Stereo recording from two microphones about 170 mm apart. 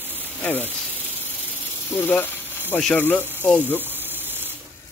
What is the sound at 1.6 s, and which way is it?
Speech, 10° left (ahead or behind).